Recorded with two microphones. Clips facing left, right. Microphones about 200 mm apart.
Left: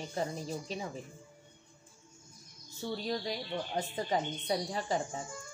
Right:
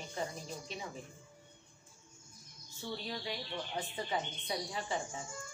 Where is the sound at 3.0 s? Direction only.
40° left (ahead or behind).